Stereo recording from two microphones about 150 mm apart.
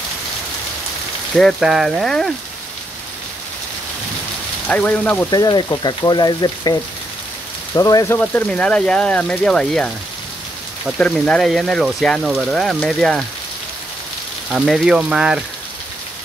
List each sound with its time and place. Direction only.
1.3 s speech: centre (ahead or behind)
4.6 s speech: 10° left (ahead or behind)
5.3 s speech: 30° left (ahead or behind)
8.2 s speech: 10° left (ahead or behind)
14.5 s speech: centre (ahead or behind)